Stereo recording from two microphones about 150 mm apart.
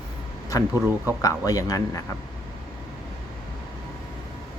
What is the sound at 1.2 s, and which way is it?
Speech, 20° left (ahead or behind).